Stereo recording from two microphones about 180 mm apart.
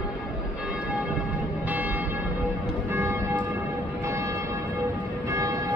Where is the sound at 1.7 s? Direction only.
10° right (ahead or behind).